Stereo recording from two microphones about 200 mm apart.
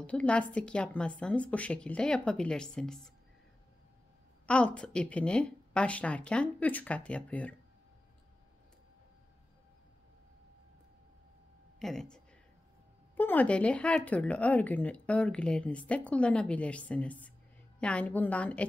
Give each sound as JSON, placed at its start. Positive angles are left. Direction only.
{"t": 0.0, "sound": "a woman's voice", "side_deg": 5}
{"t": 4.5, "sound": "speech", "side_deg": 5}
{"t": 11.8, "sound": "a woman's voice", "side_deg": 0}